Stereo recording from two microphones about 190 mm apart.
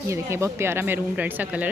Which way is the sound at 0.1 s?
15° right (ahead or behind).